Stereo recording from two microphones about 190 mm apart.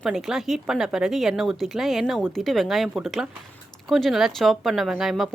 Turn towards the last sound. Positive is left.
turn(degrees=0)  # may be behind; listen again after turning